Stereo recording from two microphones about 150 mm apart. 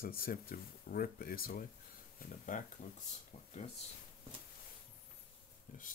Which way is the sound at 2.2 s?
60° left (ahead or behind).